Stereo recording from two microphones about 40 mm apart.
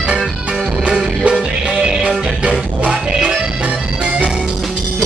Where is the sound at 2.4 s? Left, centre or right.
Right.